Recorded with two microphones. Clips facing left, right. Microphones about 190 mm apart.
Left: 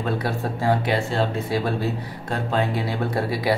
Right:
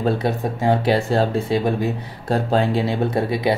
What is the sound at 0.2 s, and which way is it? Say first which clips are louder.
Speech: right 4 dB; 20° right (ahead or behind).